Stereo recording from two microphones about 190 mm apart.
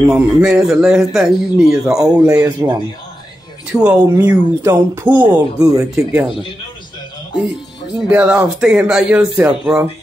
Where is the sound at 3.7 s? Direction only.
5° right (ahead or behind).